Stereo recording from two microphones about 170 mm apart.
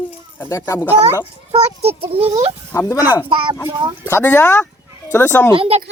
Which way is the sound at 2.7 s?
20° left (ahead or behind).